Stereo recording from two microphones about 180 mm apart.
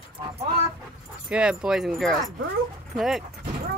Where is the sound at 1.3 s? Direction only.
5° right (ahead or behind).